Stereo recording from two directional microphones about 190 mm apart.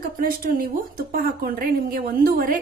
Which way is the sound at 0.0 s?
50° right (ahead or behind).